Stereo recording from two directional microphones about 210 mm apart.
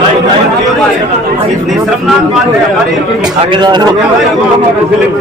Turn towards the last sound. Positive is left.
turn(degrees=-20)  # may be behind; listen again after turning